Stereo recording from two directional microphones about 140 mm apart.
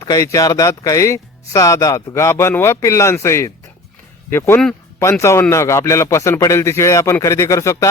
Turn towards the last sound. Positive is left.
turn(degrees=20)  # may be behind; listen again after turning